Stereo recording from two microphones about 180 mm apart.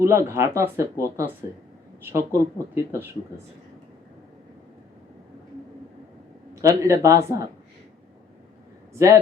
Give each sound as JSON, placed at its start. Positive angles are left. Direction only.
{"t": 0.0, "sound": "speech", "side_deg": -15}
{"t": 6.6, "sound": "speech", "side_deg": -15}
{"t": 8.9, "sound": "a man's voice", "side_deg": -15}